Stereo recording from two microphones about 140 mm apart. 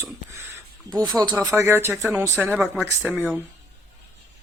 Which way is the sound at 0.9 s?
25° right (ahead or behind).